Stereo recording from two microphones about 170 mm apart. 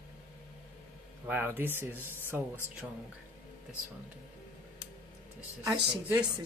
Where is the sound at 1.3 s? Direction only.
10° right (ahead or behind).